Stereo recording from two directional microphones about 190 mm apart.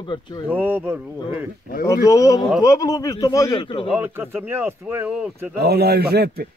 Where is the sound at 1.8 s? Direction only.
15° left (ahead or behind).